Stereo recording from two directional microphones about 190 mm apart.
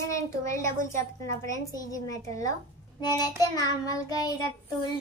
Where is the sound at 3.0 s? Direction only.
20° left (ahead or behind).